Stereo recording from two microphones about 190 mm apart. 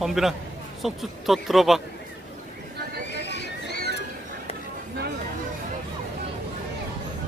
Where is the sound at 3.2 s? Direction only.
65° left (ahead or behind).